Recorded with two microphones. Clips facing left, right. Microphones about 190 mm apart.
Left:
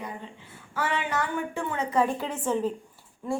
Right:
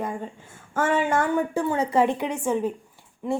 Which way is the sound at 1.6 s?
35° right (ahead or behind).